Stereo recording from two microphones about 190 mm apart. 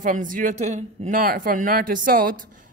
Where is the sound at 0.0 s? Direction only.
45° right (ahead or behind).